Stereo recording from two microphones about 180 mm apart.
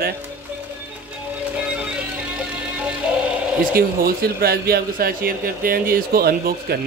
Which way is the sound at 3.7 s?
55° right (ahead or behind).